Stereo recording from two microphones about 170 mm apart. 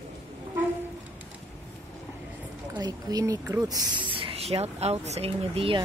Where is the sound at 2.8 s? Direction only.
20° right (ahead or behind).